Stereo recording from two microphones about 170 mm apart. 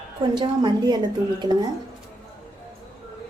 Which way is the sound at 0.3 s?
25° right (ahead or behind).